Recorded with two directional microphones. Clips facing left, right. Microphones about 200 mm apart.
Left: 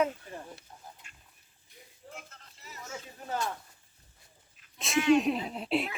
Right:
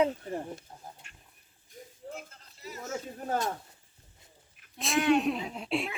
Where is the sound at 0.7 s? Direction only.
35° right (ahead or behind).